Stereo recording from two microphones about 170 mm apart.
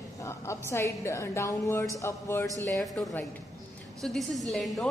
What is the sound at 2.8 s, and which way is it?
A woman's voice, 5° left (ahead or behind).